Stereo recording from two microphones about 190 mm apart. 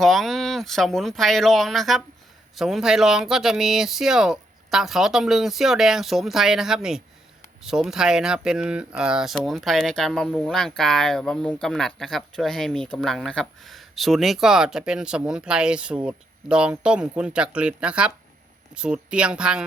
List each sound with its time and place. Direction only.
0.0 s speech: centre (ahead or behind)